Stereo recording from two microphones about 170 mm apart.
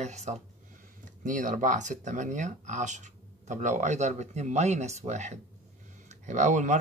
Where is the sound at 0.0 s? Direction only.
40° right (ahead or behind).